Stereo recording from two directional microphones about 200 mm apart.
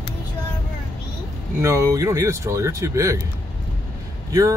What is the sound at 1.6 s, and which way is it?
Speech, 15° right (ahead or behind).